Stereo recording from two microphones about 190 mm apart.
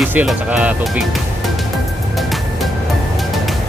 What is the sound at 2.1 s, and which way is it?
Music, centre (ahead or behind).